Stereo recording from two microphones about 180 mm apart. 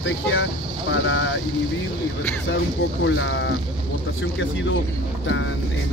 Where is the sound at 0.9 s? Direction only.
90° left.